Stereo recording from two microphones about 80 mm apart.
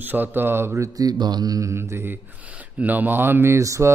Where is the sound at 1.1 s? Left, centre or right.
Right.